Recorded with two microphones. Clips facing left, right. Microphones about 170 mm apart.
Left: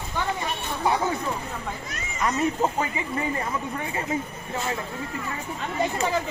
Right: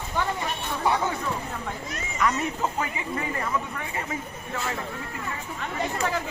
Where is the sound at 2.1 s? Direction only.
25° left (ahead or behind).